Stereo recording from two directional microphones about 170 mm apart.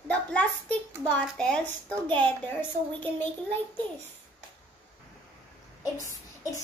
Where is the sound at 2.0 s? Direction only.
10° left (ahead or behind).